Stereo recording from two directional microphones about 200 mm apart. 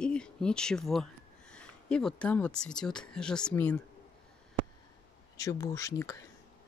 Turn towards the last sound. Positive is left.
turn(degrees=15)  # may be behind; listen again after turning